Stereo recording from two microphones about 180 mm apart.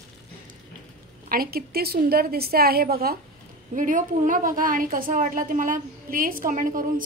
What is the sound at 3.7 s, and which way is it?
A woman's voice, 45° right (ahead or behind).